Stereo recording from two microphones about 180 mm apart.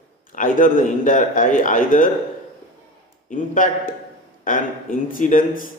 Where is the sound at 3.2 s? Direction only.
45° left (ahead or behind).